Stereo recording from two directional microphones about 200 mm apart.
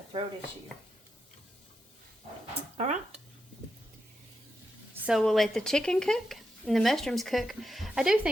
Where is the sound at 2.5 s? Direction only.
35° right (ahead or behind).